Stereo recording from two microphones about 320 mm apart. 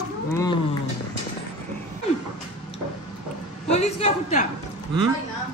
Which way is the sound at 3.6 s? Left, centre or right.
Centre.